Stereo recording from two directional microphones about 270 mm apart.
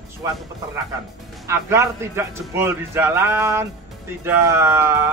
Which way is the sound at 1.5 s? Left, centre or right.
Centre.